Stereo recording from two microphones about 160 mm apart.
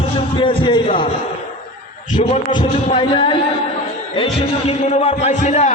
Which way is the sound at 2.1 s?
30° left (ahead or behind).